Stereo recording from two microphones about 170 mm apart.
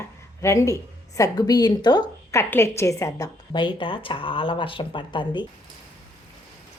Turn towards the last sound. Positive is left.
turn(degrees=30)  # may be behind; listen again after turning